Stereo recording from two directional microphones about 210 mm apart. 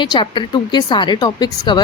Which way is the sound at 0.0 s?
20° left (ahead or behind).